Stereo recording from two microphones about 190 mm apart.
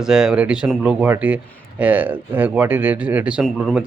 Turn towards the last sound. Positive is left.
turn(degrees=0)  # may be behind; listen again after turning